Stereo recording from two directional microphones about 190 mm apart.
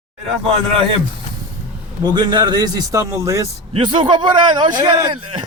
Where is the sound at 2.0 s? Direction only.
25° right (ahead or behind).